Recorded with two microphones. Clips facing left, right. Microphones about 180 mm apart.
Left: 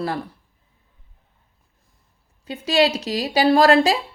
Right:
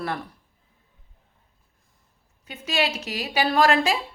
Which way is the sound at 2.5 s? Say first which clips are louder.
Left 8 dB; 35° left (ahead or behind).